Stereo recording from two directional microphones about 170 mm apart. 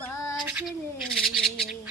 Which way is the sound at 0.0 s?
15° left (ahead or behind).